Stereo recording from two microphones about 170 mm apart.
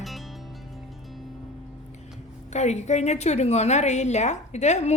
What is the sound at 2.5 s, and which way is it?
A woman's voice, 40° left (ahead or behind).